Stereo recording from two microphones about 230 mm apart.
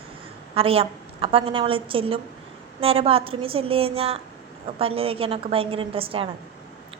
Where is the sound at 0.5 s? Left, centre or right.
Right.